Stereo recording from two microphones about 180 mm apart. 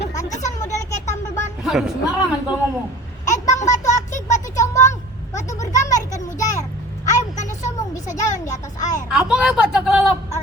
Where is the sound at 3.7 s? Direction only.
40° left (ahead or behind).